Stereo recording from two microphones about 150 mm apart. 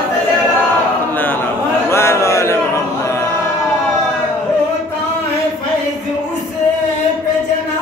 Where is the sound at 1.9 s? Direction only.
15° left (ahead or behind).